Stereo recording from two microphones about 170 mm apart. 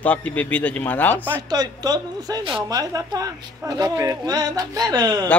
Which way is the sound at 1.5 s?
20° right (ahead or behind).